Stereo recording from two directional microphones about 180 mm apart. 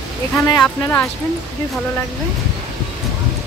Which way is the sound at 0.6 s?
10° left (ahead or behind).